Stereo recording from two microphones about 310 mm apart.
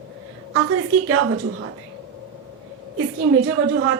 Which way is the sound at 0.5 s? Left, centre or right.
Right.